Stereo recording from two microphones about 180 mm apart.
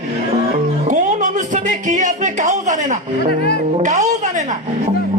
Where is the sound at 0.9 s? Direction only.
45° right (ahead or behind).